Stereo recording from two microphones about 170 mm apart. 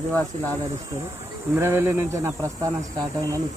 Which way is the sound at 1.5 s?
15° right (ahead or behind).